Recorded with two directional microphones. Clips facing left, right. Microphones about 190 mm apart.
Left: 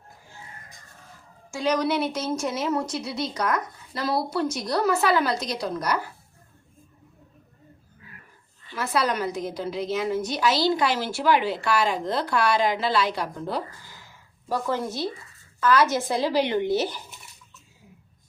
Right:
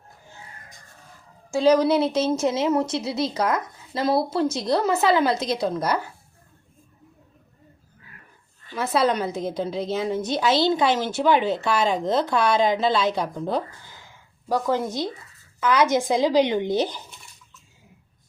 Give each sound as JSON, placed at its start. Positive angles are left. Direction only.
{"t": 1.5, "sound": "a woman's voice", "side_deg": -30}
{"t": 8.7, "sound": "a woman's voice", "side_deg": -20}